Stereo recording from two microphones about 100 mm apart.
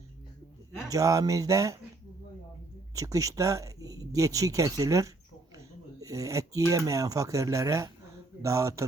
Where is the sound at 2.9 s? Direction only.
35° right (ahead or behind).